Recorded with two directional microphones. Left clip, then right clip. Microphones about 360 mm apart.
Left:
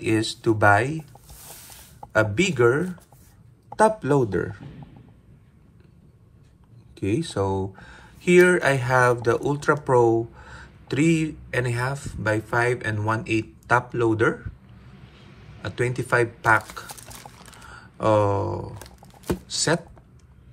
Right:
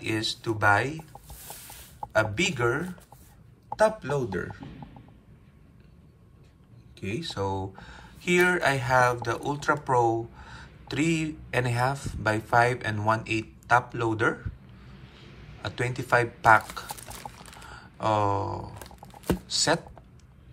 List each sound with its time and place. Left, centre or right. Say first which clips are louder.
0.0 s speech: left 6 dB; centre
7.0 s speech: left 7 dB; centre
15.6 s pour: left 5 dB; centre